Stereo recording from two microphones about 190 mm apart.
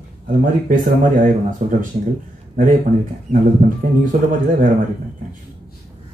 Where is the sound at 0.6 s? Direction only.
45° right (ahead or behind).